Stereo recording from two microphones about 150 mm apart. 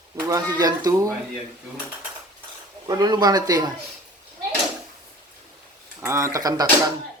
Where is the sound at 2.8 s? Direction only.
25° right (ahead or behind).